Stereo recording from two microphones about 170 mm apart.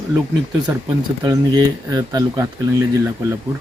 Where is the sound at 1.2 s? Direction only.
20° right (ahead or behind).